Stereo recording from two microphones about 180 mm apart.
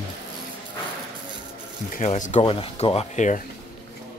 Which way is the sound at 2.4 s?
30° left (ahead or behind).